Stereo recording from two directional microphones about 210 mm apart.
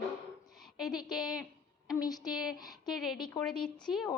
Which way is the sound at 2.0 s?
20° left (ahead or behind).